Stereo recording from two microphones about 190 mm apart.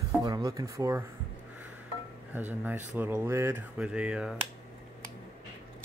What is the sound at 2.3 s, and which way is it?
Speech, 10° right (ahead or behind).